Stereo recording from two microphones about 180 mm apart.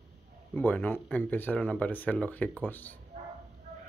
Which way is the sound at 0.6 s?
10° left (ahead or behind).